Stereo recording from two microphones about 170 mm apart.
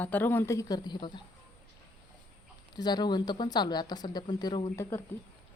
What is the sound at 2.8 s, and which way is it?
Speech, 25° left (ahead or behind).